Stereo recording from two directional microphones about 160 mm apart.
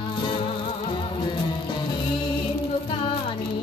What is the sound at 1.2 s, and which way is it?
Music, 30° left (ahead or behind).